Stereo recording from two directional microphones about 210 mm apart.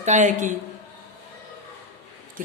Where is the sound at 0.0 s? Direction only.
35° right (ahead or behind).